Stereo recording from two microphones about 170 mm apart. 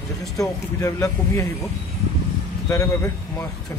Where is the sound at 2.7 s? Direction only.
20° left (ahead or behind).